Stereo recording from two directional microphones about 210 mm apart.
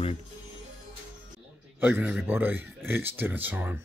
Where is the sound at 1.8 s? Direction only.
5° right (ahead or behind).